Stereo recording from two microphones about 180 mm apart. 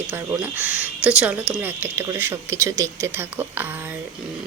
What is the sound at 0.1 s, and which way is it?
Speech, 15° right (ahead or behind).